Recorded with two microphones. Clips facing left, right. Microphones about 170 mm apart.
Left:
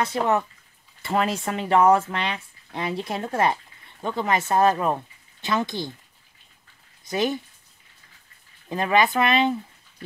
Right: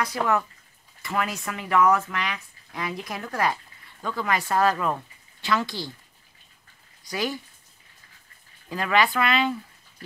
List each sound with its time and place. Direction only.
0.0 s speech: 25° left (ahead or behind)
7.1 s speech: 20° left (ahead or behind)
8.6 s speech: 25° left (ahead or behind)